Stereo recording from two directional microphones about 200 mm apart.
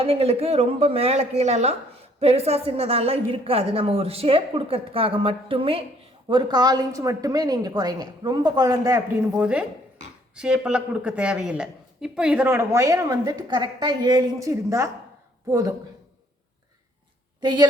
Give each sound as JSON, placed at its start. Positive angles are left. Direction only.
{"t": 0.0, "sound": "a woman's voice", "side_deg": -30}
{"t": 9.3, "sound": "speech", "side_deg": -5}
{"t": 17.4, "sound": "a woman's voice", "side_deg": -20}